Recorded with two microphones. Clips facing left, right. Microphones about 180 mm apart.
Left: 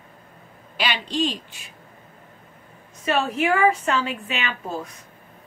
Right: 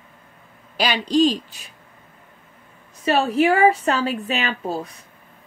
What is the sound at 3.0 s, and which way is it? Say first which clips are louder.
A woman's voice: right 4 dB; 35° right (ahead or behind).